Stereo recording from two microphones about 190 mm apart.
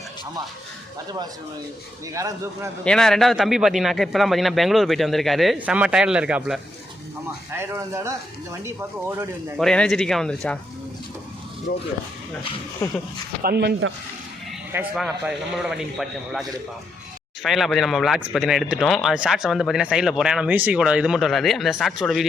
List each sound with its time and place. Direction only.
2.1 s speech: 15° right (ahead or behind)
2.8 s speech: 5° left (ahead or behind); by 9.2 s 10° right (ahead or behind)
9.6 s speech: centre (ahead or behind)
12.8 s speech: 15° left (ahead or behind)
13.4 s speech: 55° right (ahead or behind)
14.7 s speech: 5° right (ahead or behind)
17.4 s speech: centre (ahead or behind)